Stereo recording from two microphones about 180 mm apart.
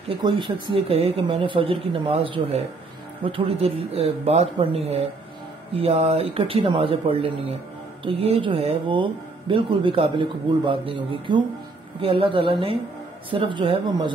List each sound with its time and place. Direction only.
0.2 s speech: 25° right (ahead or behind)